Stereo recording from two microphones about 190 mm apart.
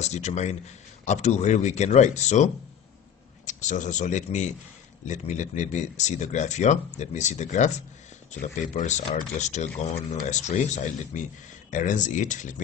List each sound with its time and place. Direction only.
0.0 s speech: 35° left (ahead or behind)